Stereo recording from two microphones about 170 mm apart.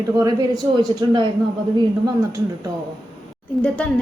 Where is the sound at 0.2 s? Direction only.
20° right (ahead or behind).